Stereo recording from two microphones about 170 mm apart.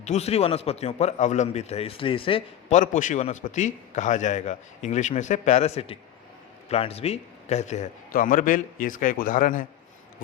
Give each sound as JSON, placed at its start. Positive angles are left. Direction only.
{"t": 0.0, "sound": "a man's voice", "side_deg": 40}
{"t": 2.7, "sound": "a man's voice", "side_deg": 50}